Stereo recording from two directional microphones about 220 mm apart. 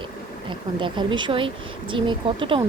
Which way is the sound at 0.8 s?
20° right (ahead or behind).